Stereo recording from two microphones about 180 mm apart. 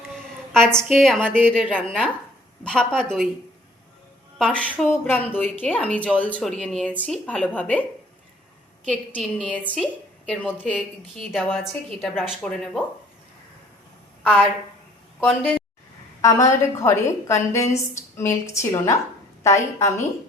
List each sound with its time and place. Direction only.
0.8 s a woman's voice: centre (ahead or behind)
4.4 s a woman's voice: 5° left (ahead or behind)
8.9 s a woman's voice: 5° left (ahead or behind)
15.2 s a woman's voice: 10° left (ahead or behind)